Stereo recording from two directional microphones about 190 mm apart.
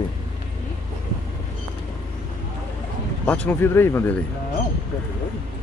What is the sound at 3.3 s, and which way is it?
Speech, 10° left (ahead or behind).